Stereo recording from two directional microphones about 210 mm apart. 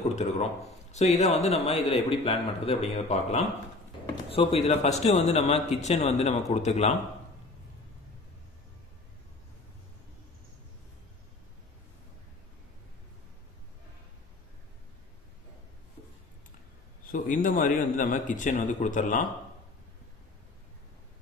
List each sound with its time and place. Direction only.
0.1 s a man's voice: 30° left (ahead or behind)
17.1 s a man's voice: 40° left (ahead or behind)